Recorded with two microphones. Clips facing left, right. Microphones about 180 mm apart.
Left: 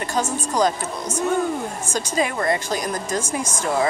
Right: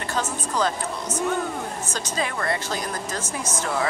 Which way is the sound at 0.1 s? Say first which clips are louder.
Left 3 dB; 15° left (ahead or behind).